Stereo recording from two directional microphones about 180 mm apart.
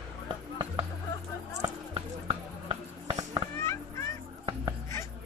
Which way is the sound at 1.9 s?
30° right (ahead or behind).